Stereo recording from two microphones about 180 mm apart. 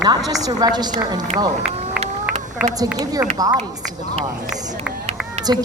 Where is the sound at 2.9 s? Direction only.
20° right (ahead or behind).